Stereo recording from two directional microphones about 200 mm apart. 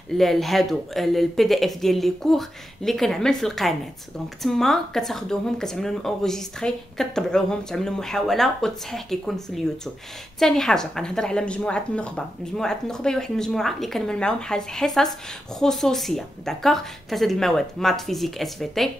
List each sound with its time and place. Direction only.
0.2 s speech: centre (ahead or behind)